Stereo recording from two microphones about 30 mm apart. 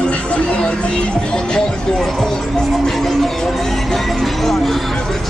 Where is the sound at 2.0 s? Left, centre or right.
Centre.